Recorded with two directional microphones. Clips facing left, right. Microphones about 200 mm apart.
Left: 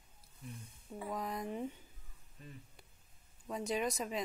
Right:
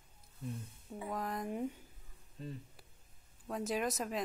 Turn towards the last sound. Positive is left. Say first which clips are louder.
# even
turn(degrees=0)  # may be behind; listen again after turning